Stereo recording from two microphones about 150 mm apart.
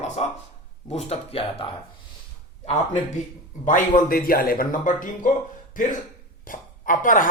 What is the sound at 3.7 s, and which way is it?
Speech, 60° left (ahead or behind).